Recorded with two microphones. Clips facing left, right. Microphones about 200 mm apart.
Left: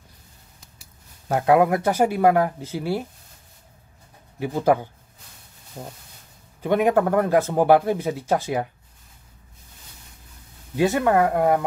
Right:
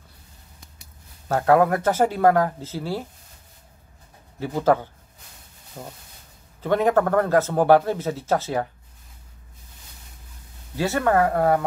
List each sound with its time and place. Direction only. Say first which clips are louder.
1.3 s a man's voice: even; 15° left (ahead or behind)
4.4 s a man's voice: even; 15° left (ahead or behind)
6.6 s a man's voice: left 1 dB; 15° left (ahead or behind)
10.8 s a man's voice: left 2 dB; 15° left (ahead or behind)